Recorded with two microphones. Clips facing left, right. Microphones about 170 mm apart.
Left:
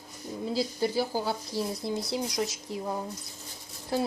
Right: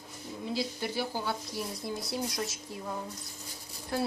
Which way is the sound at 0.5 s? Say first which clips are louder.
Left 5 dB; 35° left (ahead or behind).